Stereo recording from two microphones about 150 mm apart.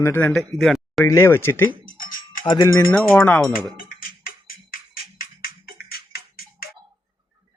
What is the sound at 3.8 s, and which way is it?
Music, 75° left (ahead or behind).